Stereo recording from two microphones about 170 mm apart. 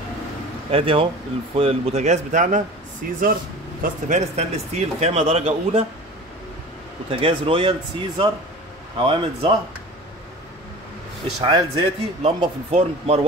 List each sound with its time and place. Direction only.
0.7 s speech: 35° right (ahead or behind); by 3.2 s 55° right (ahead or behind)
3.8 s speech: 45° right (ahead or behind)
7.1 s speech: 35° right (ahead or behind)
11.4 s speech: 25° right (ahead or behind)
12.2 s speech: 40° right (ahead or behind)